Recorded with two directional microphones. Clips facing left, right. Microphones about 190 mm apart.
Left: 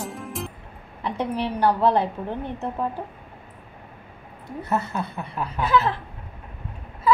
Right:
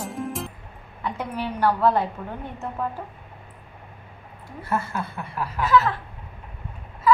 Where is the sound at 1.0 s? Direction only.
30° left (ahead or behind).